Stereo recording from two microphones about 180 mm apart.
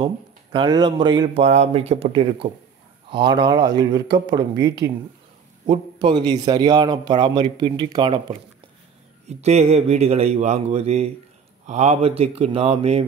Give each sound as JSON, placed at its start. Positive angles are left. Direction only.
{"t": 0.0, "sound": "speech", "side_deg": -25}
{"t": 1.4, "sound": "a man's voice", "side_deg": -35}
{"t": 9.3, "sound": "a man's voice", "side_deg": -35}